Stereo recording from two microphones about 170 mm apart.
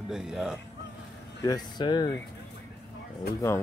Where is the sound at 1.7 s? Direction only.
25° left (ahead or behind).